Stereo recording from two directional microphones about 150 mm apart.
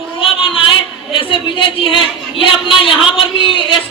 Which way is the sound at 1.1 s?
35° left (ahead or behind).